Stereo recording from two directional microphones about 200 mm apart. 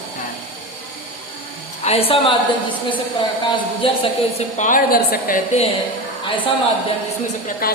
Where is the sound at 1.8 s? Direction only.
30° left (ahead or behind).